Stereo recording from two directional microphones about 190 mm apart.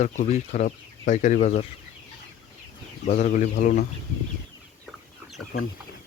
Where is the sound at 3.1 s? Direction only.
40° left (ahead or behind).